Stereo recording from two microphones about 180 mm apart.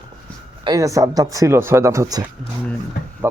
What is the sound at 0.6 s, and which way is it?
Speech, 20° right (ahead or behind).